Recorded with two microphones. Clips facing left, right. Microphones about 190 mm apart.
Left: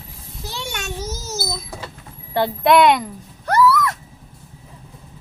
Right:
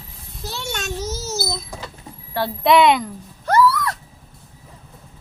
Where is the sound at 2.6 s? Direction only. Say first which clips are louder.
Even; centre (ahead or behind).